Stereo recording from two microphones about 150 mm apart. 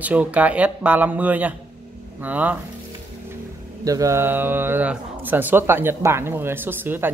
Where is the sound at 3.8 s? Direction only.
20° right (ahead or behind).